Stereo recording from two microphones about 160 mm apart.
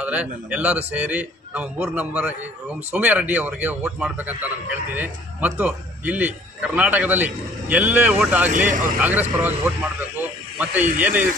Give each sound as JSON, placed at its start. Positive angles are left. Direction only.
{"t": 0.0, "sound": "a man's voice", "side_deg": -10}
{"t": 8.5, "sound": "speech", "side_deg": -55}
{"t": 9.0, "sound": "a man's voice", "side_deg": -10}